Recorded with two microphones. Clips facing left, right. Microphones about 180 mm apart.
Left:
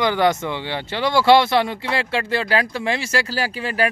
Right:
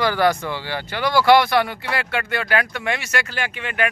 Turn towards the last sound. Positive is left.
turn(degrees=35)  # may be behind; listen again after turning